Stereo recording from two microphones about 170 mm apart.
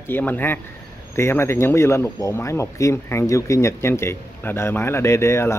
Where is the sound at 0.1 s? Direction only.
10° left (ahead or behind).